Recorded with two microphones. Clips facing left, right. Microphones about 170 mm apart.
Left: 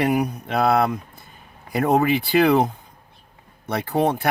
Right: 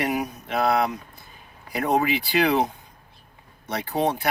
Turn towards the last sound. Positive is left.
turn(degrees=55)  # may be behind; listen again after turning